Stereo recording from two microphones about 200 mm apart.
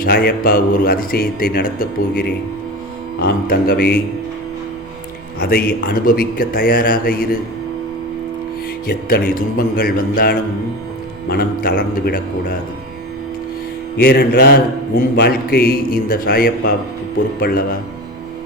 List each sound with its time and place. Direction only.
0.0 s speech: 50° left (ahead or behind)
3.2 s speech: 50° left (ahead or behind)
5.4 s speech: 50° left (ahead or behind)
8.9 s speech: 50° left (ahead or behind)
13.9 s speech: 50° left (ahead or behind)